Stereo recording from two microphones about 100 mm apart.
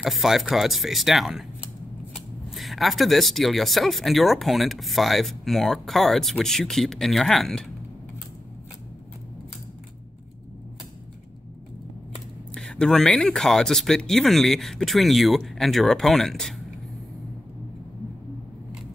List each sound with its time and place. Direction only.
0.0 s speech: 5° right (ahead or behind)
12.5 s speech: 5° left (ahead or behind)